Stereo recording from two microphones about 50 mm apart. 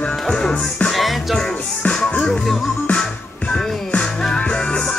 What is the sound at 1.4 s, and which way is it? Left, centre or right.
Music, centre.